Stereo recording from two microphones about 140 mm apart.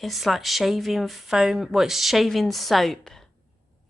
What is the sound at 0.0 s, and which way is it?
A woman's voice, centre (ahead or behind).